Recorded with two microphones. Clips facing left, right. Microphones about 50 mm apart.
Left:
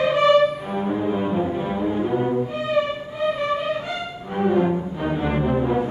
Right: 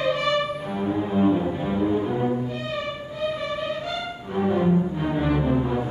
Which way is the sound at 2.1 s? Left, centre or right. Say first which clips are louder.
Left 3 dB; left.